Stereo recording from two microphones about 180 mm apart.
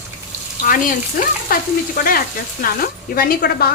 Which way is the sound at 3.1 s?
55° left (ahead or behind).